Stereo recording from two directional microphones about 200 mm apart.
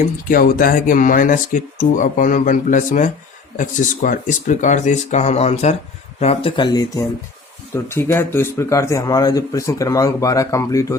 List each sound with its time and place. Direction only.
0.3 s speech: 45° left (ahead or behind); by 10.9 s 15° left (ahead or behind)